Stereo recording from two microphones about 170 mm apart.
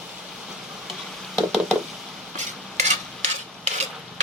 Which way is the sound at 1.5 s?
Centre (ahead or behind).